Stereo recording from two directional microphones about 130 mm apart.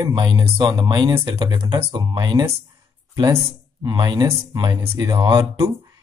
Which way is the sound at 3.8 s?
30° right (ahead or behind).